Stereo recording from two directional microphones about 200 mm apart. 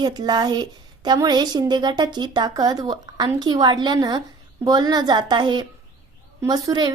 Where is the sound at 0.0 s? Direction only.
20° right (ahead or behind).